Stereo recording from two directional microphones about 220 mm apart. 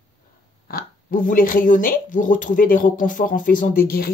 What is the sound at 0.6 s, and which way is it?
Speech, 40° left (ahead or behind).